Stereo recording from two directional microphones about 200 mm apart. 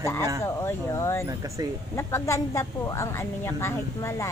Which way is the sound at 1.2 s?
15° right (ahead or behind).